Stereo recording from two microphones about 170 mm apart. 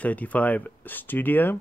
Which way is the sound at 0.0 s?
10° left (ahead or behind).